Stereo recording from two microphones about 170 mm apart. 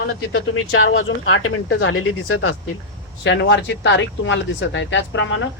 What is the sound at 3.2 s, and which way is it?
Speech, 90° left.